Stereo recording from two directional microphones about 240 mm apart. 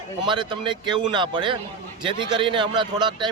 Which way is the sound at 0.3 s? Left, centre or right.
Centre.